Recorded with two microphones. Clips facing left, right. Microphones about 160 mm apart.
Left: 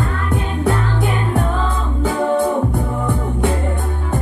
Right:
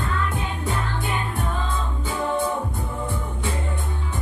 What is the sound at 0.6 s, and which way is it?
Music, 80° left.